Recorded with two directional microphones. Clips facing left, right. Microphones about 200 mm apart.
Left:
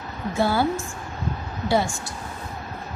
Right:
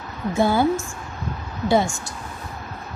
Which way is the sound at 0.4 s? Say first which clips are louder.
Right 3 dB; 15° right (ahead or behind).